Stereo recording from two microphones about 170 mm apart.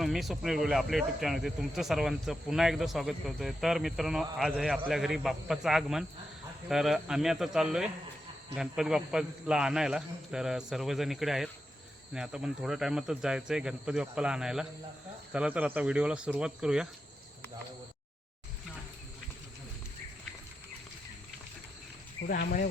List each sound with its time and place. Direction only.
0.0 s speech: centre (ahead or behind)
22.3 s speech: 55° left (ahead or behind)